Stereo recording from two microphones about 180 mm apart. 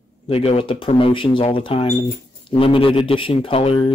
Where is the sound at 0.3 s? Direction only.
35° left (ahead or behind).